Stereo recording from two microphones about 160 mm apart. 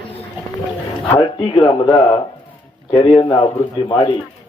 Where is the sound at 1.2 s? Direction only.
30° left (ahead or behind).